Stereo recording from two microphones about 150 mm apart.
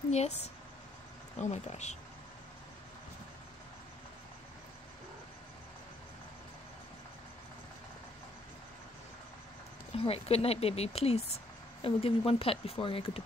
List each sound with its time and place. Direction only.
0.1 s speech: 45° left (ahead or behind)
9.9 s speech: 40° left (ahead or behind)